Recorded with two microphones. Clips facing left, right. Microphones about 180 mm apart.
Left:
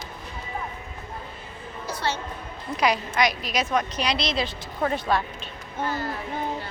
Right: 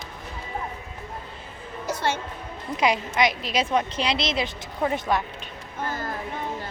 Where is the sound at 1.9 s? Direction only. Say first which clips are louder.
Right 3 dB; 50° right (ahead or behind).